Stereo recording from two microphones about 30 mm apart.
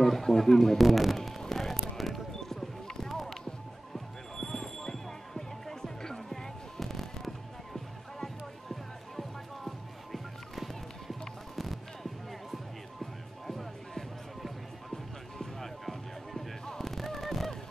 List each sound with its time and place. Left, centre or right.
0.0 s speech: centre
0.7 s speech: centre
1.5 s music: centre
2.0 s basketball bounce: centre
3.9 s music: centre